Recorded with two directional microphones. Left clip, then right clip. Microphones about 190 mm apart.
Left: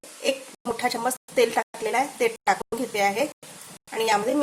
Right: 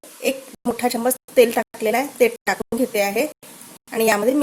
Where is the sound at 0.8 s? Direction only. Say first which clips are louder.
Right 4 dB; 40° right (ahead or behind).